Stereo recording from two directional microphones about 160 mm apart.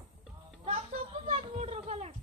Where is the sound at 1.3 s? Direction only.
35° right (ahead or behind).